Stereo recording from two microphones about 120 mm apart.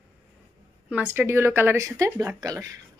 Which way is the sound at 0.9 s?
15° right (ahead or behind).